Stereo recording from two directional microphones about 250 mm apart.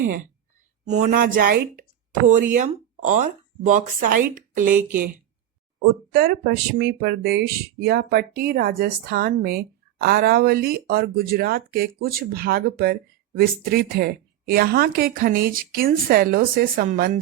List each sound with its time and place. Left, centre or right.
0.9 s a woman's voice: right
5.8 s a woman's voice: right